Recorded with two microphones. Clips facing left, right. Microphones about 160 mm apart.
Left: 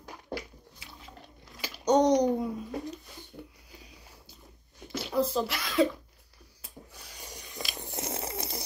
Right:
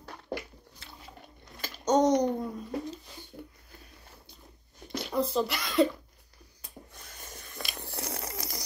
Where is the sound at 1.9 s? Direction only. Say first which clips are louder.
Left 1 dB; 5° right (ahead or behind).